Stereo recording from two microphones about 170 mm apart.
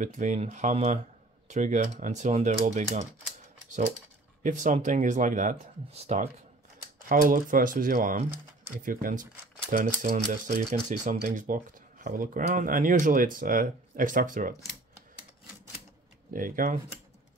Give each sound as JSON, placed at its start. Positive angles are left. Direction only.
{"t": 0.0, "sound": "speech", "side_deg": -45}
{"t": 4.4, "sound": "speech", "side_deg": -50}
{"t": 7.1, "sound": "speech", "side_deg": -55}
{"t": 16.3, "sound": "speech", "side_deg": -55}